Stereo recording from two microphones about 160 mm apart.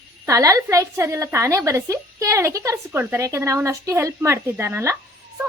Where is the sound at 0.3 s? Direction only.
20° right (ahead or behind).